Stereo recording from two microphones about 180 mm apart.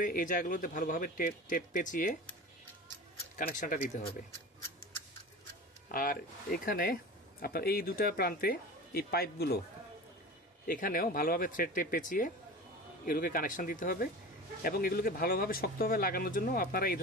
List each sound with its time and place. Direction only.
0.0 s speech: 50° left (ahead or behind)
3.3 s speech: 50° left (ahead or behind)
5.9 s speech: 50° left (ahead or behind)
10.7 s speech: 50° left (ahead or behind)